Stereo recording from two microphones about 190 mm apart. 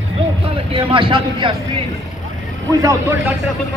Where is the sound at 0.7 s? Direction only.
25° right (ahead or behind).